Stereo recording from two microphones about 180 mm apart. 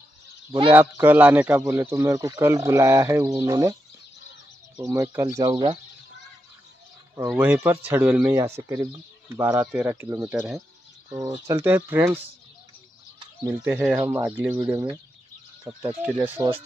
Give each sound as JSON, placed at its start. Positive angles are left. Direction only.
{"t": 0.5, "sound": "speech", "side_deg": -30}
{"t": 0.7, "sound": "speech", "side_deg": -10}
{"t": 4.7, "sound": "speech", "side_deg": -15}
{"t": 7.2, "sound": "speech", "side_deg": -10}
{"t": 11.1, "sound": "speech", "side_deg": -20}
{"t": 13.4, "sound": "speech", "side_deg": -10}